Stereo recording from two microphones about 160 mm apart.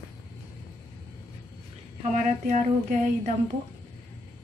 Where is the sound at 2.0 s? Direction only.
50° right (ahead or behind).